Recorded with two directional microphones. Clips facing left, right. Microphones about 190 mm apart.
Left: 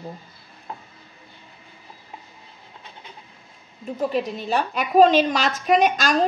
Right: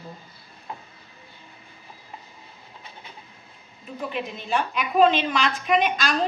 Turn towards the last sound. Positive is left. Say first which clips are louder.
# left 4 dB
turn(degrees=45)  # may be behind; listen again after turning